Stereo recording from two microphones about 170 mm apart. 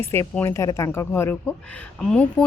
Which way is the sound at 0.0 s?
15° left (ahead or behind).